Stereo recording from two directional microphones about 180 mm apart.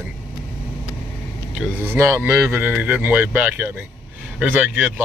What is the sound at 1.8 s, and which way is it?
Speech, 15° right (ahead or behind).